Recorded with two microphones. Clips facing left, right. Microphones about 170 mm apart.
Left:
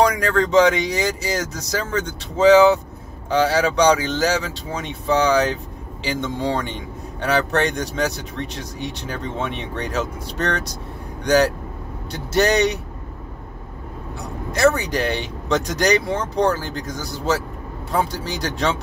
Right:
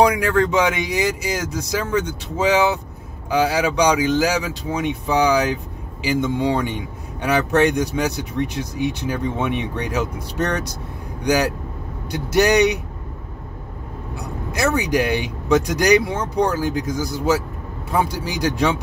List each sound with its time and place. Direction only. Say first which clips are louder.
0.0 s a man's voice: right 2 dB; 10° right (ahead or behind)
11.2 s a man's voice: left 2 dB; 10° right (ahead or behind)
14.6 s a man's voice: left 1 dB; 10° right (ahead or behind)